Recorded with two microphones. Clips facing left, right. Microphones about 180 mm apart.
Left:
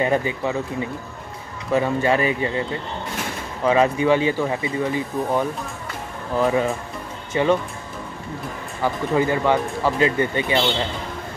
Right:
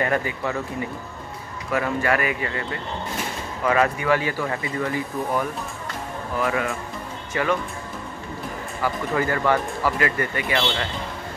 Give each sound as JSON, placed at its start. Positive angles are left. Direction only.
{"t": 0.0, "sound": "speech", "side_deg": 20}
{"t": 1.7, "sound": "speech", "side_deg": 25}
{"t": 3.6, "sound": "speech", "side_deg": 25}
{"t": 8.8, "sound": "speech", "side_deg": 20}